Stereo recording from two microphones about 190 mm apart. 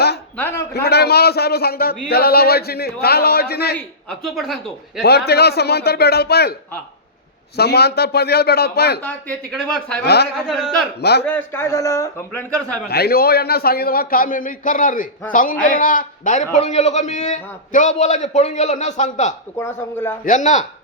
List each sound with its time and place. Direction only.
0.3 s a man's voice: 10° left (ahead or behind)
0.7 s a man's voice: 60° left (ahead or behind)
3.8 s a man's voice: centre (ahead or behind)
5.0 s a man's voice: 60° left (ahead or behind)
7.5 s a man's voice: 60° left (ahead or behind)
9.0 s a man's voice: 5° left (ahead or behind)
10.0 s a man's voice: 60° left (ahead or behind)
10.5 s a man's voice: centre (ahead or behind)
11.0 s a man's voice: 60° left (ahead or behind)
11.3 s a man's voice: 10° left (ahead or behind)
12.9 s a man's voice: 55° left (ahead or behind); by 19.3 s 40° left (ahead or behind)
19.5 s a man's voice: 15° left (ahead or behind)
20.2 s a man's voice: 40° left (ahead or behind)